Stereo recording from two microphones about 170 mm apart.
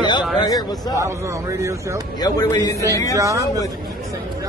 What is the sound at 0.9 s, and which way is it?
Speech, 15° right (ahead or behind).